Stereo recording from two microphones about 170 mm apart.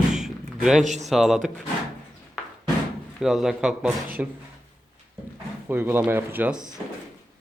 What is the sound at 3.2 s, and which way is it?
A man's voice, centre (ahead or behind).